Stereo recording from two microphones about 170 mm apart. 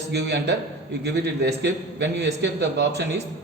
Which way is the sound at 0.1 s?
85° right.